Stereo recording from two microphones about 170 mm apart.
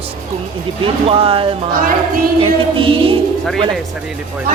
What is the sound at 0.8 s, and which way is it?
Speech, 35° right (ahead or behind).